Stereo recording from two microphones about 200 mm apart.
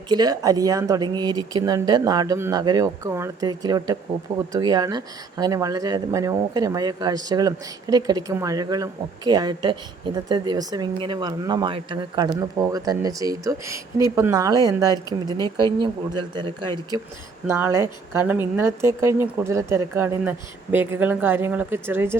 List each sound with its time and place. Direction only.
0.1 s a woman's voice: 20° right (ahead or behind)